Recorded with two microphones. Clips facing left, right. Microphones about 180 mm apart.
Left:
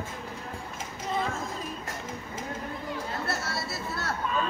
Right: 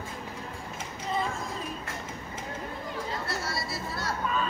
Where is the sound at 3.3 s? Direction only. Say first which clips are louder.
Left 1 dB; 70° left (ahead or behind).